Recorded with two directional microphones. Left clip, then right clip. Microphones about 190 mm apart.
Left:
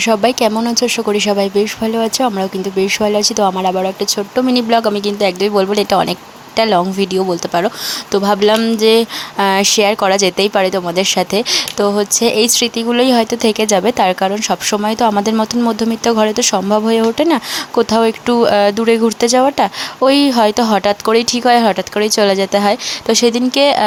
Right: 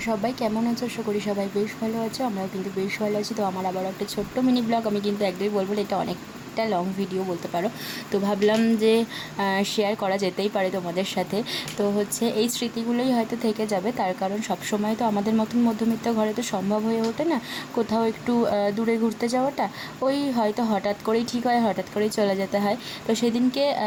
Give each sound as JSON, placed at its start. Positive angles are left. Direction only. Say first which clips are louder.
{"t": 0.0, "sound": "speech", "louder": "left 14 dB", "side_deg": 30}
{"t": 8.1, "sound": "speech", "louder": "left 10 dB", "side_deg": 15}